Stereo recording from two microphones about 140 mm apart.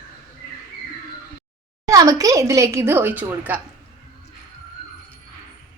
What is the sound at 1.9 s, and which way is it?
Speech, 25° right (ahead or behind).